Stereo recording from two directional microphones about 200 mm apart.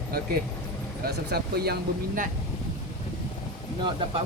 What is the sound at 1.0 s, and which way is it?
Speech, 50° right (ahead or behind).